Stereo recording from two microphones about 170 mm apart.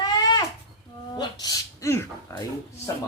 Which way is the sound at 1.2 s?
25° left (ahead or behind).